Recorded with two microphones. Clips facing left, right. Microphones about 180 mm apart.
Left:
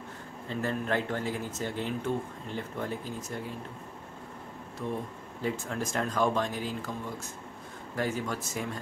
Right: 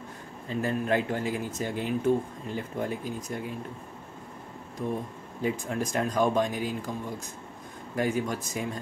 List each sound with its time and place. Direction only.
0.5 s speech: 15° right (ahead or behind)
5.4 s speech: 15° right (ahead or behind)
7.9 s speech: 15° right (ahead or behind)